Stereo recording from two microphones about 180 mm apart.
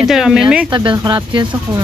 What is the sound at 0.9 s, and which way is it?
Speech, 20° right (ahead or behind).